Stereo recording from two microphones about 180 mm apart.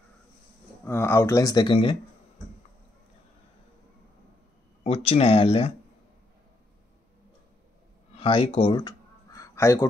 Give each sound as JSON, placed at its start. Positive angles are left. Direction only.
{"t": 0.8, "sound": "speech", "side_deg": 15}
{"t": 4.8, "sound": "speech", "side_deg": 35}
{"t": 8.2, "sound": "a sound", "side_deg": 30}